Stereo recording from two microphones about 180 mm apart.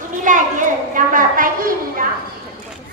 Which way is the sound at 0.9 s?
50° right (ahead or behind).